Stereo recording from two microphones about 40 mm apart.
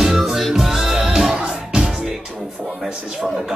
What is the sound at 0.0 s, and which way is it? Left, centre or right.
Music, centre.